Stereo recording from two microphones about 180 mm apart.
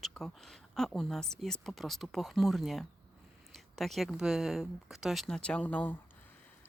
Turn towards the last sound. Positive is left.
turn(degrees=10)  # may be behind; listen again after turning